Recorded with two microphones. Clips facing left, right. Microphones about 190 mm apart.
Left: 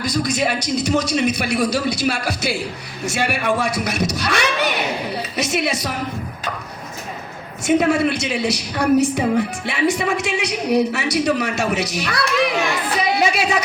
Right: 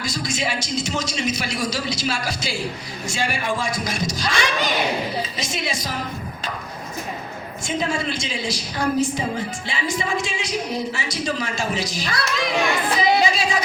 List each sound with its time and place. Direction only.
0.0 s a man's voice: 60° left (ahead or behind)
7.6 s a man's voice: 65° left (ahead or behind)
13.0 s music: 65° left (ahead or behind)